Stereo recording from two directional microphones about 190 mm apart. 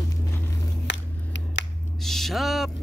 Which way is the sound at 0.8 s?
70° left (ahead or behind).